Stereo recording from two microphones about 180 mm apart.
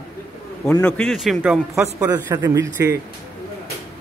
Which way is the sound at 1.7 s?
15° right (ahead or behind).